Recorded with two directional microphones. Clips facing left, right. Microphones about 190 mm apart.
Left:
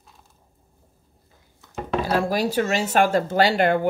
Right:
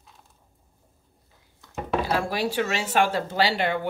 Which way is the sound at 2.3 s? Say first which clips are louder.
Left 4 dB; 40° left (ahead or behind).